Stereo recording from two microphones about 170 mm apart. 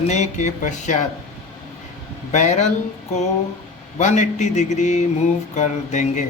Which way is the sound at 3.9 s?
45° left (ahead or behind).